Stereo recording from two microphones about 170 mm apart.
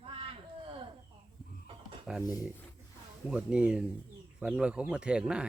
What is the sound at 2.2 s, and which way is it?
Speech, 20° left (ahead or behind).